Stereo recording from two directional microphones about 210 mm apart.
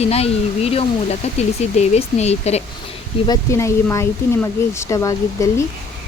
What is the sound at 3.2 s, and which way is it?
Speech, 15° left (ahead or behind).